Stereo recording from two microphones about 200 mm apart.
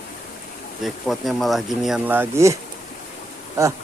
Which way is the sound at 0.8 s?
Centre (ahead or behind).